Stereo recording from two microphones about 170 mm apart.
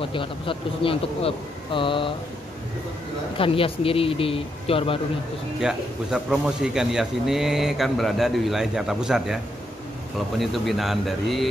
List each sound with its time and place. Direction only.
0.0 s speech: 30° left (ahead or behind)
3.3 s speech: 30° left (ahead or behind)
5.6 s speech: 5° right (ahead or behind)
10.4 s speech: centre (ahead or behind)